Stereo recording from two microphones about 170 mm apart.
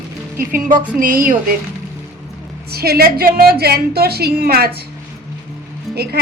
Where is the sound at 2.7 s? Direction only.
65° right (ahead or behind).